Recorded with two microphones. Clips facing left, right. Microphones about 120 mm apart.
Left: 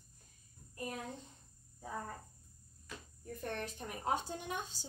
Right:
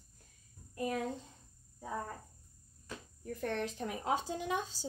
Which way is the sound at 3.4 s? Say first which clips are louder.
Right 5 dB; 90° right.